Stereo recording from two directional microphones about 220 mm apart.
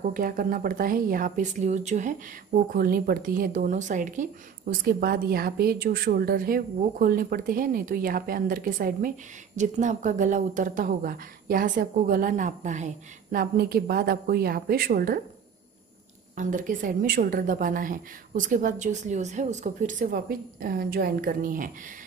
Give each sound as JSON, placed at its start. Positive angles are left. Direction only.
{"t": 0.0, "sound": "speech", "side_deg": -40}
{"t": 16.3, "sound": "speech", "side_deg": -35}